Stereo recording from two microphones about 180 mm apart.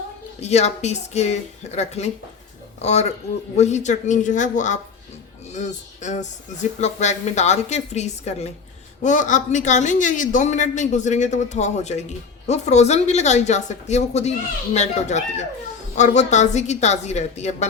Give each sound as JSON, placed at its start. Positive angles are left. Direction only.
{"t": 0.3, "sound": "a woman's voice", "side_deg": 40}